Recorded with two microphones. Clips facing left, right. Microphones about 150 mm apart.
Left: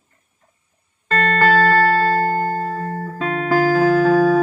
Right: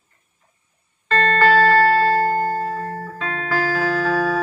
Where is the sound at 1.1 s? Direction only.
30° right (ahead or behind).